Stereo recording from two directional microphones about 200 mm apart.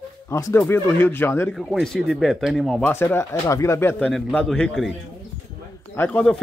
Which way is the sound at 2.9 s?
10° left (ahead or behind).